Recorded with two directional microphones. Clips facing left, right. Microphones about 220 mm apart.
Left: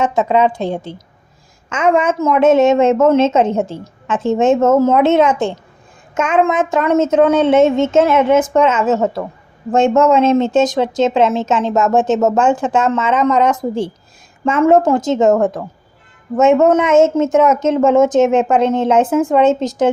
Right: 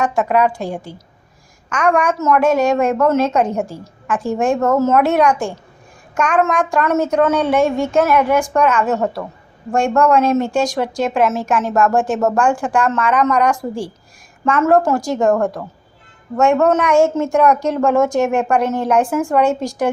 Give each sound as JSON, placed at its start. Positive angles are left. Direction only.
{"t": 0.0, "sound": "a woman's voice", "side_deg": 20}